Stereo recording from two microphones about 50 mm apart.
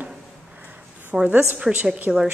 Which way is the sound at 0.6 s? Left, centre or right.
Right.